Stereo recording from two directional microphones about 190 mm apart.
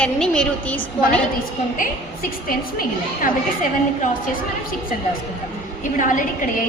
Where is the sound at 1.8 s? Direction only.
50° left (ahead or behind).